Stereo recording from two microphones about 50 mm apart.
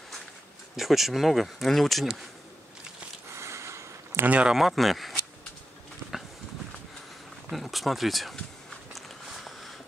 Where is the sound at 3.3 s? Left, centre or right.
Right.